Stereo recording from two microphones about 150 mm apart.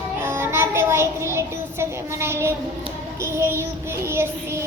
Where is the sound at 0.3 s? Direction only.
15° right (ahead or behind).